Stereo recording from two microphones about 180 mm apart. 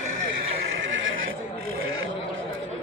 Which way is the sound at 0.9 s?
90° right.